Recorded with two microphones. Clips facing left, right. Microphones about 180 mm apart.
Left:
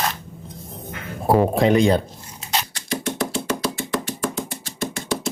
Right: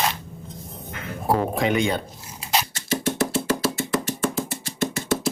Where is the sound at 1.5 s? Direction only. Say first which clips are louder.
Left 6 dB; 35° left (ahead or behind).